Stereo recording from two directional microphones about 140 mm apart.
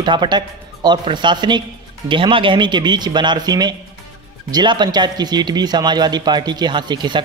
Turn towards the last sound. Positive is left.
turn(degrees=-35)  # may be behind; listen again after turning